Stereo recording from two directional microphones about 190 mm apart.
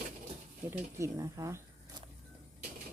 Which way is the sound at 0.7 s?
15° right (ahead or behind).